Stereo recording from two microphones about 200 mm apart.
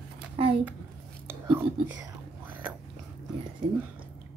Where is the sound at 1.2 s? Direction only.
10° right (ahead or behind).